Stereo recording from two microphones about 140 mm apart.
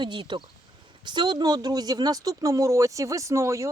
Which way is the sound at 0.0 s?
35° right (ahead or behind).